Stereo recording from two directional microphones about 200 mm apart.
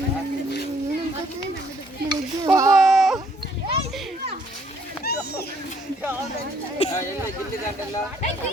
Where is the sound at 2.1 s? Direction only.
20° right (ahead or behind).